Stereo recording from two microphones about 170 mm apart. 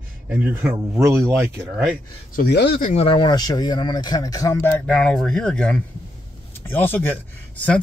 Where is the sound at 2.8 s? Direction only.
40° left (ahead or behind).